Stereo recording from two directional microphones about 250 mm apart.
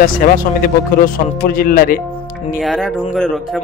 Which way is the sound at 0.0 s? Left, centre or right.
Left.